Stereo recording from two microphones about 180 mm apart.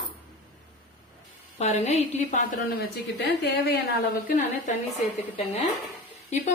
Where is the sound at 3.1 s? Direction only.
70° left (ahead or behind).